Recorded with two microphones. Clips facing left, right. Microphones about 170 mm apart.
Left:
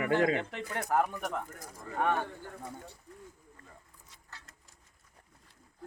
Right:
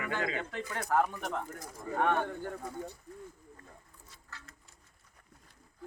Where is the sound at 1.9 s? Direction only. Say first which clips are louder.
Right 2 dB; 15° right (ahead or behind).